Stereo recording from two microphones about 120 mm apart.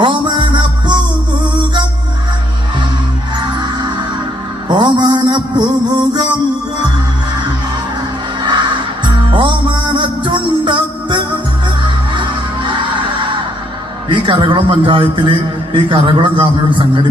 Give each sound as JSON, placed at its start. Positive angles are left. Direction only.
{"t": 0.0, "sound": "music", "side_deg": -40}
{"t": 4.6, "sound": "music", "side_deg": -40}
{"t": 9.0, "sound": "music", "side_deg": -40}
{"t": 14.0, "sound": "a man's voice", "side_deg": -40}